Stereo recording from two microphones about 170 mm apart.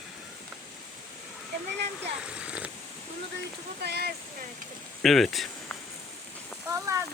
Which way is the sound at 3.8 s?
70° right (ahead or behind).